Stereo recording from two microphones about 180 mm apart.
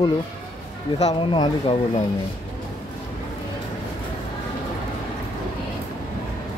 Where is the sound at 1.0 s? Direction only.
30° left (ahead or behind).